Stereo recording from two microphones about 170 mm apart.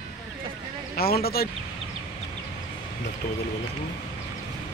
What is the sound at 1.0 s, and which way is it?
Speech, 65° left (ahead or behind).